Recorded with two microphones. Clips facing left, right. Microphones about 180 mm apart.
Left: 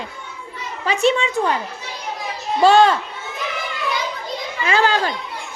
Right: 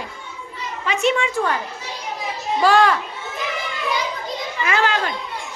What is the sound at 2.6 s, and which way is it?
Speech, 25° left (ahead or behind).